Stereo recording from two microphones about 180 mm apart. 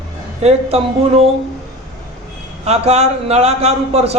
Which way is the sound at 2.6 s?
35° right (ahead or behind).